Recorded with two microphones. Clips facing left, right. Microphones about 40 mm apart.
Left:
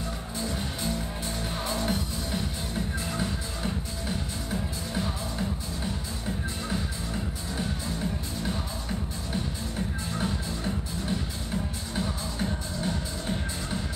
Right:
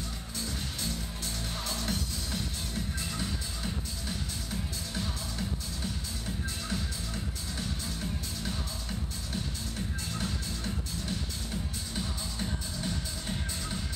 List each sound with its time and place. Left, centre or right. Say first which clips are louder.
0.4 s music: left 4 dB; centre
10.1 s music: left 6 dB; centre